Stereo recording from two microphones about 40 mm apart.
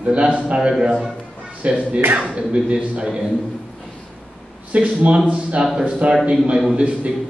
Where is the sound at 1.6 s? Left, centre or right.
Right.